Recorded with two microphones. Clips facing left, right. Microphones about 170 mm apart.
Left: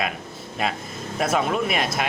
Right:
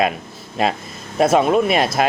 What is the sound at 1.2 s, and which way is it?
Speech, 25° right (ahead or behind).